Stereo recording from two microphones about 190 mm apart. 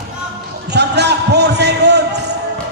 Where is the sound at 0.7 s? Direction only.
60° right (ahead or behind).